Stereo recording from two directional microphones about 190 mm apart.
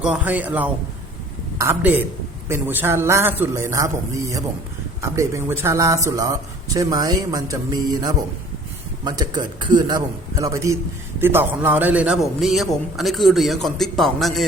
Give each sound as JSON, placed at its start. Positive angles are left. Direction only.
{"t": 0.0, "sound": "a man's voice", "side_deg": -5}